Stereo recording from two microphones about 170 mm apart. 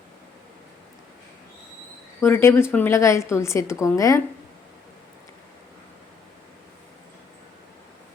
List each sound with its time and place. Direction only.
2.2 s a woman's voice: 15° left (ahead or behind)